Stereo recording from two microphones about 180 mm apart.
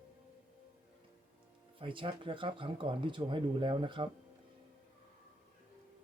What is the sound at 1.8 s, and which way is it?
Speech, 30° right (ahead or behind).